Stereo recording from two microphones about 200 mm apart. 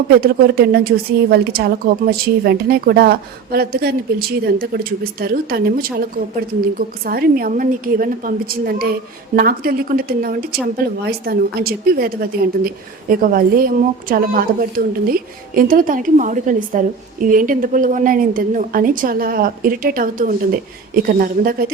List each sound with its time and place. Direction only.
0.1 s a woman's voice: 50° right (ahead or behind)